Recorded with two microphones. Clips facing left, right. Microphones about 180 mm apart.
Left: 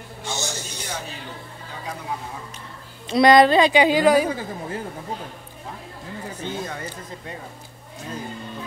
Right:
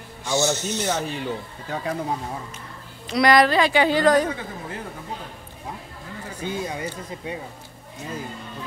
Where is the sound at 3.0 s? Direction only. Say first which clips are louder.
Left 3 dB; 25° left (ahead or behind).